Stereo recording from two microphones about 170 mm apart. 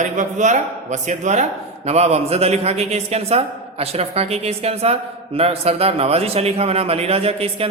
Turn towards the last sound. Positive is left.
turn(degrees=-35)  # may be behind; listen again after turning